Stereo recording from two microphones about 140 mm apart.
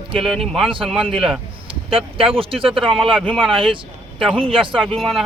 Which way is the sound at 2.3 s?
40° right (ahead or behind).